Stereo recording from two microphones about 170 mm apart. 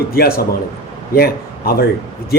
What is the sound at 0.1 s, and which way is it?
A man's voice, 65° left (ahead or behind).